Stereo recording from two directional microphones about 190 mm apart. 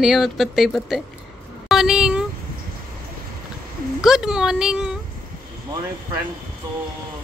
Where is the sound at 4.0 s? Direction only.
5° right (ahead or behind).